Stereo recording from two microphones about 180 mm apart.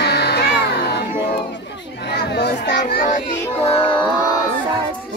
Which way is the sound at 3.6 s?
30° left (ahead or behind).